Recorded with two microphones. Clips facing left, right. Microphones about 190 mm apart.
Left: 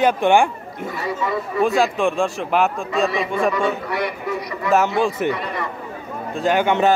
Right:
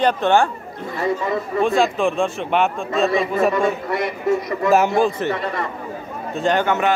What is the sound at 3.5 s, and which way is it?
A man's voice, 50° right (ahead or behind).